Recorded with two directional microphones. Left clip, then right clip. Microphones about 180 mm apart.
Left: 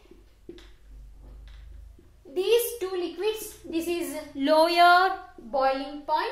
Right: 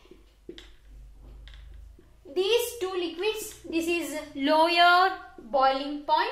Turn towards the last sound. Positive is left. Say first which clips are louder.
# right 2 dB
turn(degrees=10)  # may be behind; listen again after turning